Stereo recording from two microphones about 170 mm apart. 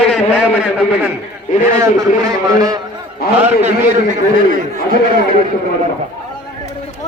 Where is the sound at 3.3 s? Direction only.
40° right (ahead or behind).